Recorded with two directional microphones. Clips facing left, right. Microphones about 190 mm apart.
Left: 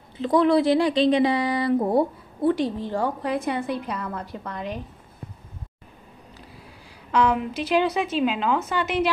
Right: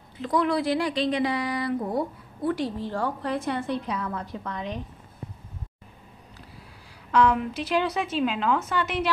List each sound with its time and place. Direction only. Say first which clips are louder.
0.2 s a woman's voice: left 6 dB; 25° left (ahead or behind); by 4.8 s 5° left (ahead or behind)
7.1 s a woman's voice: even; centre (ahead or behind)